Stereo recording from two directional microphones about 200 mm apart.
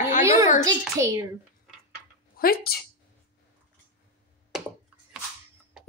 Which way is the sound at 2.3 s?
50° left (ahead or behind).